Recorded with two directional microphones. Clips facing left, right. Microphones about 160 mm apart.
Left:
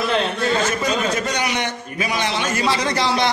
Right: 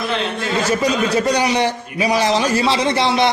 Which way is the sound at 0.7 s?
35° right (ahead or behind).